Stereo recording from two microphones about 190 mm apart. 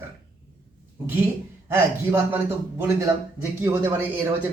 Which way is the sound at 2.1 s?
10° right (ahead or behind).